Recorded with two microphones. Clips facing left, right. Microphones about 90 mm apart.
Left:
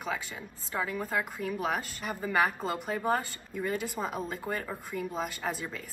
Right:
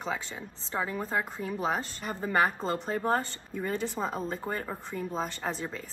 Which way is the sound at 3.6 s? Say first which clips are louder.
Right 1 dB; 10° left (ahead or behind).